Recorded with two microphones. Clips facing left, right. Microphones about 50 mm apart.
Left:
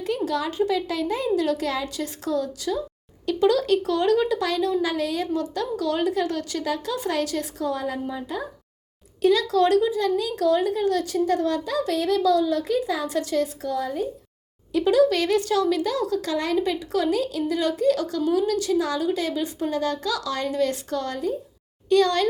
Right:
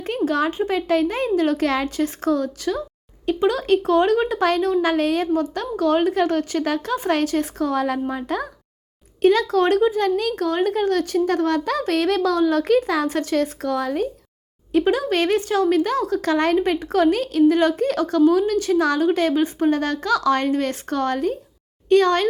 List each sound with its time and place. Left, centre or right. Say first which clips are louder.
0.0 s a sound: right 4 dB; right
0.7 s speech: right 5 dB; right
1.9 s speech: right 6 dB; right
3.2 s speech: right 1 dB; right
5.3 s speech: right 4 dB; right
9.2 s speech: right 3 dB; right
13.1 s speech: right 3 dB; right
14.7 s speech: even; right